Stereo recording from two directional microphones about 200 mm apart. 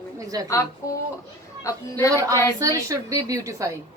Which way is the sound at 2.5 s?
15° right (ahead or behind).